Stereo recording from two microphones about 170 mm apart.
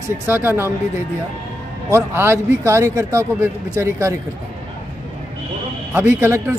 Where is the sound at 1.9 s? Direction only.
15° right (ahead or behind).